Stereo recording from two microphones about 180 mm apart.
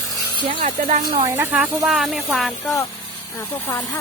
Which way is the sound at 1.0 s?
20° right (ahead or behind).